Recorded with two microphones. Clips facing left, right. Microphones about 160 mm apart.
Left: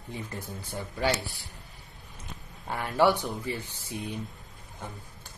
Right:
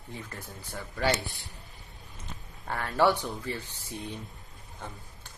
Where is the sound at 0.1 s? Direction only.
20° left (ahead or behind).